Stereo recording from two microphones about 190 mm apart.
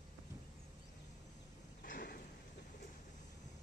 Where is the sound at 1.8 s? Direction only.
50° left (ahead or behind).